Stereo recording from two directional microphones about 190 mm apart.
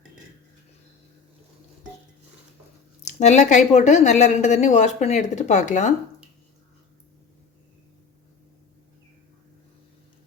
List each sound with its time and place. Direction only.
3.1 s speech: 35° left (ahead or behind)